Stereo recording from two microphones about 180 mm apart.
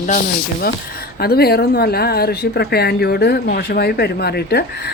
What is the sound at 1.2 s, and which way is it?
Speech, 60° left (ahead or behind).